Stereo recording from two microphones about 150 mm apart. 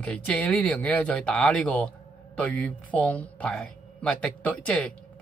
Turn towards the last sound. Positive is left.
turn(degrees=10)  # may be behind; listen again after turning